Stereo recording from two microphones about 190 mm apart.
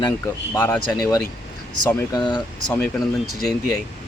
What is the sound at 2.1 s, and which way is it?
Speech, 20° left (ahead or behind).